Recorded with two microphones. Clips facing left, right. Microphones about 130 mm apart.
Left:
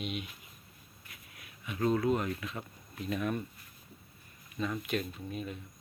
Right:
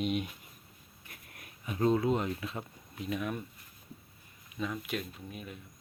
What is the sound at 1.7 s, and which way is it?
Speech, 25° right (ahead or behind).